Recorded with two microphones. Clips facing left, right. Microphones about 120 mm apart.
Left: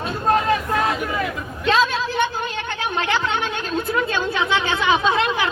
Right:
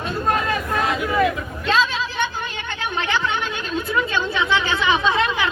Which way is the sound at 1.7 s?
50° left (ahead or behind).